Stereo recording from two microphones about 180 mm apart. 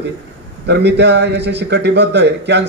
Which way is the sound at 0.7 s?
70° right (ahead or behind).